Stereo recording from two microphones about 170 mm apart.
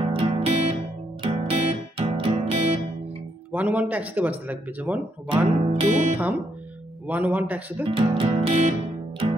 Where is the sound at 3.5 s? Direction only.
10° right (ahead or behind).